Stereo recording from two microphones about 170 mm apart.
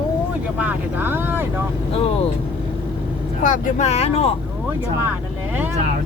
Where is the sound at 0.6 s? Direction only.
10° right (ahead or behind).